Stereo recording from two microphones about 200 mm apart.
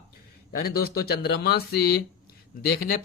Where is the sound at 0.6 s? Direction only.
50° left (ahead or behind).